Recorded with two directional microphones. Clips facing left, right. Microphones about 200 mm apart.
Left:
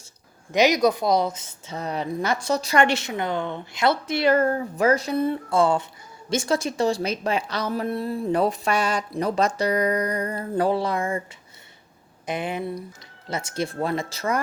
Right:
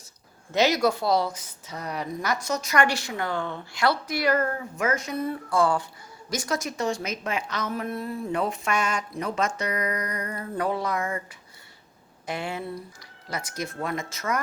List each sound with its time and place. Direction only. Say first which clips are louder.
0.5 s a woman's voice: left 3 dB; 15° left (ahead or behind)
12.2 s a woman's voice: left 4 dB; 20° left (ahead or behind)